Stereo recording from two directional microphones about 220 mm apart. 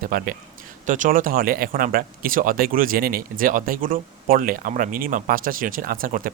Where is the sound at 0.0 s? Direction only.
40° right (ahead or behind).